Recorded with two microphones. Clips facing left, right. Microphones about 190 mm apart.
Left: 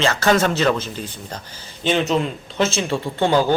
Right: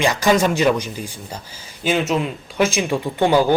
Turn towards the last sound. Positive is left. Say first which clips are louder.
# right 2 dB
turn(degrees=-10)  # may be behind; listen again after turning